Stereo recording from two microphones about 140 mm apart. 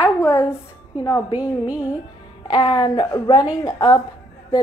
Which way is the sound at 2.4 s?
30° left (ahead or behind).